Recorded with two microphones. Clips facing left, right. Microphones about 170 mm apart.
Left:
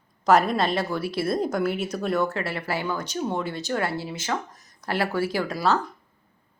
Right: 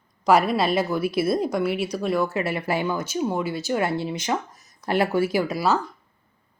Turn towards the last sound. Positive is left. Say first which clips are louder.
# right 2 dB
turn(degrees=-5)  # may be behind; listen again after turning